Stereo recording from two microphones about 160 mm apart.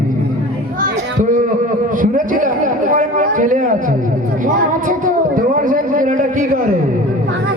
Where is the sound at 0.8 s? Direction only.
50° right (ahead or behind).